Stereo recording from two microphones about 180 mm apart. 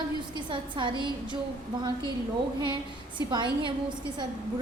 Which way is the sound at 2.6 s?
25° right (ahead or behind).